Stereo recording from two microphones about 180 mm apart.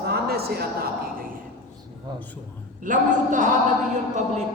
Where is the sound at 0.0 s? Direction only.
60° right (ahead or behind).